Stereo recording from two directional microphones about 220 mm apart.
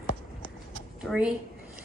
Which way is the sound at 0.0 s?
40° left (ahead or behind).